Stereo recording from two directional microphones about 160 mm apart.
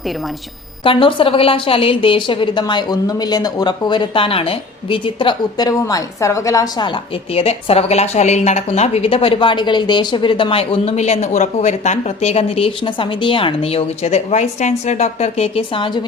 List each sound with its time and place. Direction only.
0.9 s a woman's voice: 30° left (ahead or behind)